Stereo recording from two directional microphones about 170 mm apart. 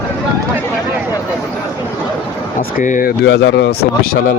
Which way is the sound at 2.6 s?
50° left (ahead or behind).